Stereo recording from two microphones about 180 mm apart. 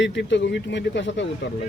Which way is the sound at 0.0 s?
75° left (ahead or behind).